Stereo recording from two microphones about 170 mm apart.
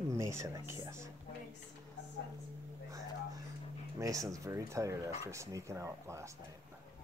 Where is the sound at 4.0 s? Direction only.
20° right (ahead or behind).